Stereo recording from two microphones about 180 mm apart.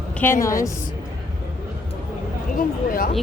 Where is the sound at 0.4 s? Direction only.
15° left (ahead or behind).